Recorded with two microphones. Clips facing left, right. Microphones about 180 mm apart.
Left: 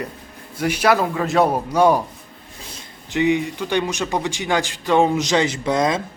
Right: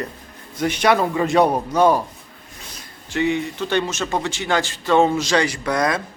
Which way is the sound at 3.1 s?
15° left (ahead or behind).